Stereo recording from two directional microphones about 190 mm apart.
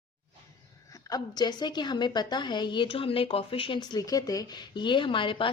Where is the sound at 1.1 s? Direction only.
20° left (ahead or behind).